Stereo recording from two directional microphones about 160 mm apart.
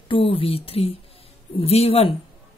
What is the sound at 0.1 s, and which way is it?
A woman's voice, 35° left (ahead or behind).